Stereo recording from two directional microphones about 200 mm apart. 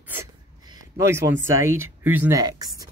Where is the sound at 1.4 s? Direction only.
15° right (ahead or behind).